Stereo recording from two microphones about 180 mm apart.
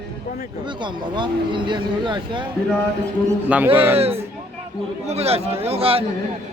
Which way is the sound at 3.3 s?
10° right (ahead or behind).